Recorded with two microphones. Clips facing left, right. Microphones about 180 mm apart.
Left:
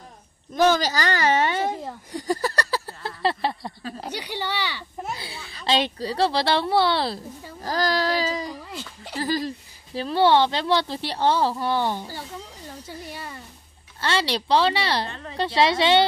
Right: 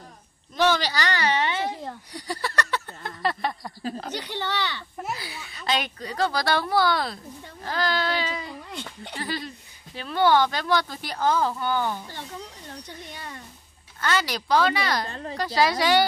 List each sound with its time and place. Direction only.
0.6 s a woman's voice: 45° left (ahead or behind)
2.1 s a sound: 45° left (ahead or behind); by 3.7 s 30° left (ahead or behind)
4.0 s speech: 10° left (ahead or behind)
5.1 s a child's voice: 30° left (ahead or behind)
7.6 s a sound: 40° left (ahead or behind)
8.6 s speech: 5° left (ahead or behind)
9.1 s speech: 35° left (ahead or behind)
13.0 s speech: 5° left (ahead or behind)
14.0 s a child's voice: 30° left (ahead or behind)
15.0 s a woman's voice: 40° right (ahead or behind)
15.3 s a child's voice: 25° left (ahead or behind)